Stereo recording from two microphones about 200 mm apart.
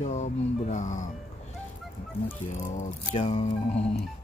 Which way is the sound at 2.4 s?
40° left (ahead or behind).